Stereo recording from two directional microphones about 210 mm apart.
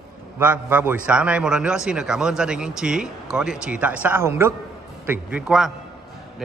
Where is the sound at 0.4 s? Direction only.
10° right (ahead or behind).